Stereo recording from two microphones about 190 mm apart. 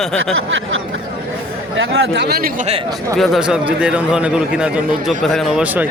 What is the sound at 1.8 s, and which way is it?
Speech, 70° right (ahead or behind).